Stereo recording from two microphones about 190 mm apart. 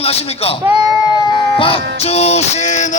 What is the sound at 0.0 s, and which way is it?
Speech, 30° left (ahead or behind).